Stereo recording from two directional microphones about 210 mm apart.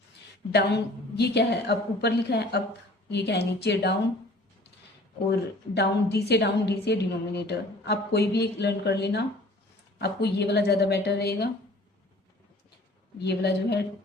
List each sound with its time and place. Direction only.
0.5 s a woman's voice: 50° left (ahead or behind)
5.3 s a woman's voice: 50° left (ahead or behind)
13.1 s a woman's voice: 50° left (ahead or behind)